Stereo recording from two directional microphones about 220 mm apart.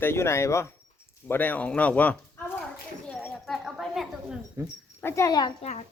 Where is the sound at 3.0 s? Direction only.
5° left (ahead or behind).